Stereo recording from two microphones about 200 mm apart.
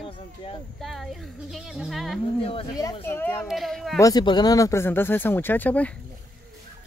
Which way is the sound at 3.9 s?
20° left (ahead or behind).